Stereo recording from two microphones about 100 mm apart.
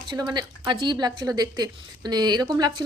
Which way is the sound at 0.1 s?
45° right (ahead or behind).